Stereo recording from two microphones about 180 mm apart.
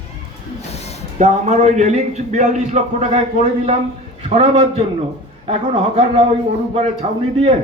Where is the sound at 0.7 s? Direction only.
35° left (ahead or behind).